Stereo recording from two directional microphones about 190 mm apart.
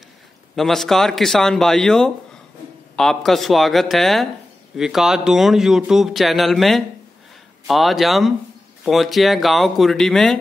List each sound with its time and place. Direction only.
0.6 s speech: centre (ahead or behind)